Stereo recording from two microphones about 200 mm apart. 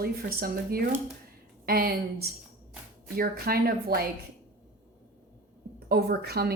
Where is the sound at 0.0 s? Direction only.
50° right (ahead or behind).